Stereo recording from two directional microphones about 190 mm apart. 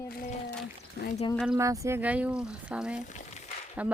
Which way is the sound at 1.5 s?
15° right (ahead or behind).